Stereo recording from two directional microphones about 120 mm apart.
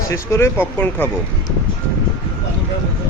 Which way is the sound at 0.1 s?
25° left (ahead or behind).